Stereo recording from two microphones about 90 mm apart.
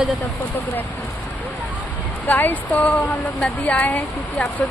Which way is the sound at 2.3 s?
20° left (ahead or behind).